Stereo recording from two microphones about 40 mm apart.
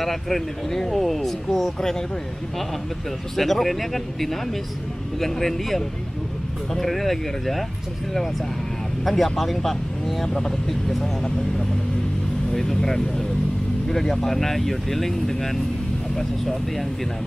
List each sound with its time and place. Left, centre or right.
0.0 s speech: centre
3.3 s speech: centre
9.0 s speech: centre
10.2 s speech: centre